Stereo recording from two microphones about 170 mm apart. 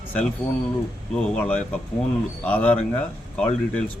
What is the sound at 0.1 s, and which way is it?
A man's voice, 10° left (ahead or behind).